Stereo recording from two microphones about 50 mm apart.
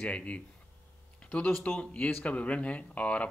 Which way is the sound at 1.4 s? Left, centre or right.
Left.